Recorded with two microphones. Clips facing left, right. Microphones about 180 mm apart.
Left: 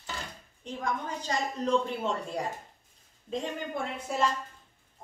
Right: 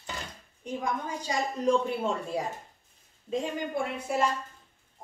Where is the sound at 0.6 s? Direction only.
10° right (ahead or behind).